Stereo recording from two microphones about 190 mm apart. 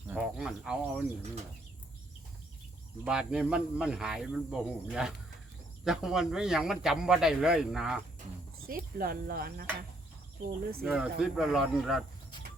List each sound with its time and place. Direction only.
0.1 s a sound: centre (ahead or behind)
3.0 s speech: 5° right (ahead or behind)
8.6 s speech: 50° right (ahead or behind)
10.8 s speech: 5° right (ahead or behind)